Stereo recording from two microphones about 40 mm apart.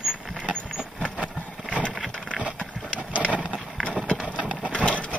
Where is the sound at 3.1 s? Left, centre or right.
Right.